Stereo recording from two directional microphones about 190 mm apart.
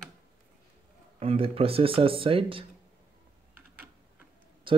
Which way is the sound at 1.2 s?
30° right (ahead or behind).